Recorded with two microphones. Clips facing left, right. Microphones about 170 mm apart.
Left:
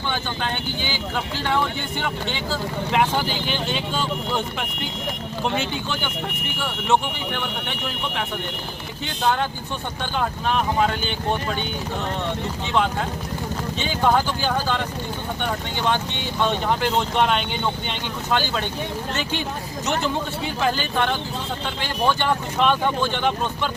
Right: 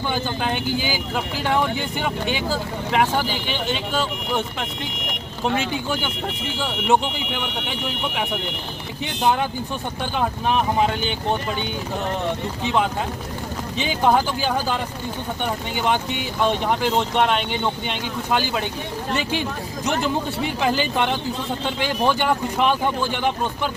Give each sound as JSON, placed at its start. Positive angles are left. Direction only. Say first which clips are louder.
{"t": 0.1, "sound": "speech", "louder": "right 3 dB", "side_deg": -10}
{"t": 2.9, "sound": "speech", "louder": "right 1 dB", "side_deg": 0}
{"t": 6.6, "sound": "speech", "louder": "right 2 dB", "side_deg": -15}
{"t": 9.2, "sound": "speech", "louder": "right 2 dB", "side_deg": -15}
{"t": 13.7, "sound": "speech", "louder": "right 2 dB", "side_deg": -15}
{"t": 15.9, "sound": "speech", "louder": "right 1 dB", "side_deg": -10}
{"t": 20.7, "sound": "speech", "louder": "right 1 dB", "side_deg": -15}